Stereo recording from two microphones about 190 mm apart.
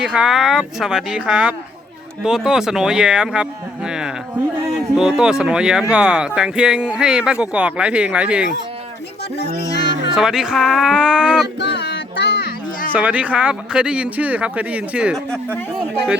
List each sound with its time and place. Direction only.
0.0 s speech: 5° right (ahead or behind)
10.2 s speech: 5° right (ahead or behind)
11.6 s a sound: 65° left (ahead or behind)
12.9 s speech: 10° right (ahead or behind)